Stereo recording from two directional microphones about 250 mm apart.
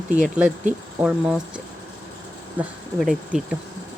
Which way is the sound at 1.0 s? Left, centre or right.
Centre.